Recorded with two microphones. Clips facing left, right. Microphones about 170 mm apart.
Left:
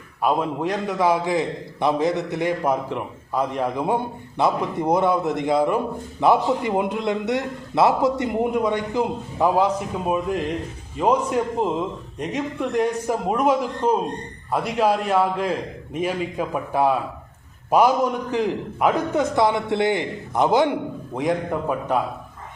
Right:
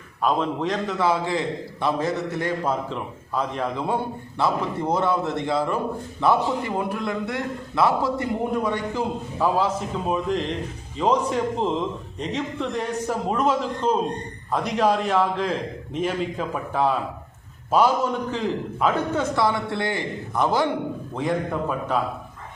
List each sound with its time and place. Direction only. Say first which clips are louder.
0.2 s a man's voice: left 1 dB; 10° left (ahead or behind)